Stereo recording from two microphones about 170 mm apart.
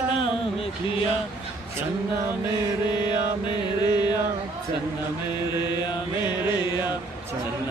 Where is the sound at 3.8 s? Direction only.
25° left (ahead or behind).